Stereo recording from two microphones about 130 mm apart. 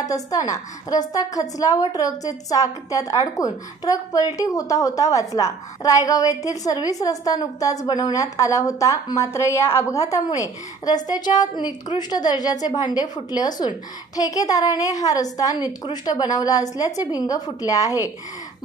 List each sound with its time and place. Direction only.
0.0 s a woman's voice: 25° left (ahead or behind)